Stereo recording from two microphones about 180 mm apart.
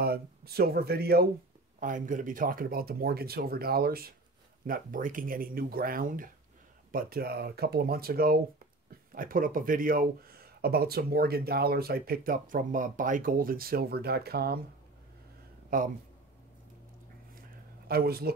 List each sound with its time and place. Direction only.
0.0 s speech: 60° right (ahead or behind)
1.8 s speech: 45° right (ahead or behind)
15.7 s speech: 50° right (ahead or behind)
17.4 s a sound: 55° right (ahead or behind)